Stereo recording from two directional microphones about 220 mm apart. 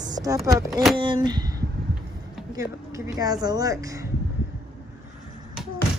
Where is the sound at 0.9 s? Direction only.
20° right (ahead or behind).